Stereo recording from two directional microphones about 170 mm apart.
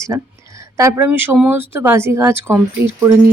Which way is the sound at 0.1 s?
20° right (ahead or behind).